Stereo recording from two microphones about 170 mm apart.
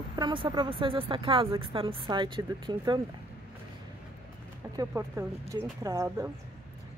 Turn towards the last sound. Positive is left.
turn(degrees=-15)  # may be behind; listen again after turning